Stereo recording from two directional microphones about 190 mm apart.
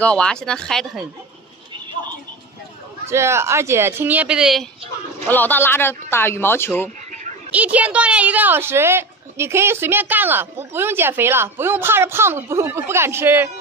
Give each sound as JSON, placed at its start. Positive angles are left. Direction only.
{"t": 0.0, "sound": "speech", "side_deg": 5}
{"t": 3.1, "sound": "a woman's voice", "side_deg": -15}
{"t": 5.2, "sound": "speech", "side_deg": 10}
{"t": 7.5, "sound": "a woman's voice", "side_deg": -5}